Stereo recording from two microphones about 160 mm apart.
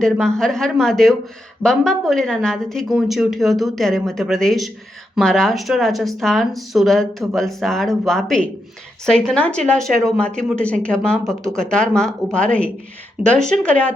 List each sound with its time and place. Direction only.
0.0 s speech: centre (ahead or behind)